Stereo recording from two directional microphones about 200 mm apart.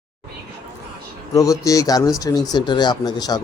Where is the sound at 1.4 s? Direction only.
15° left (ahead or behind).